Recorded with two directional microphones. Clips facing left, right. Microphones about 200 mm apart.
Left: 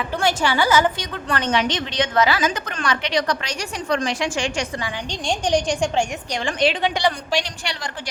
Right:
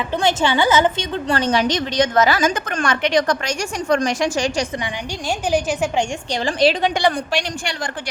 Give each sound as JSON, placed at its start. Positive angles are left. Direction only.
{"t": 0.2, "sound": "a woman's voice", "side_deg": -20}
{"t": 5.5, "sound": "a woman's voice", "side_deg": -5}
{"t": 6.3, "sound": "a woman's voice", "side_deg": -35}
{"t": 7.0, "sound": "a woman's voice", "side_deg": -50}